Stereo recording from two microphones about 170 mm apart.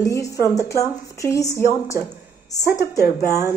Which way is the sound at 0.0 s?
20° left (ahead or behind).